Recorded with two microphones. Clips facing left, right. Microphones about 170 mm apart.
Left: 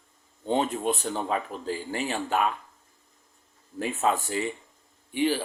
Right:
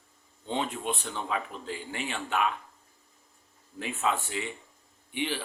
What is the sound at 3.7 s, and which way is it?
Speech, 40° left (ahead or behind).